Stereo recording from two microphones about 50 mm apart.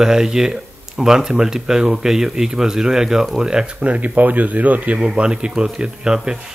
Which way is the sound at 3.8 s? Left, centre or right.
Right.